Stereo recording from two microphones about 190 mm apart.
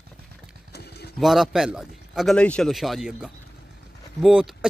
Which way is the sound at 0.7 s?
60° left (ahead or behind).